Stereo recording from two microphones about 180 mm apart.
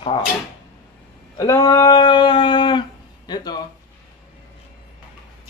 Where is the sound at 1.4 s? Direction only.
15° left (ahead or behind).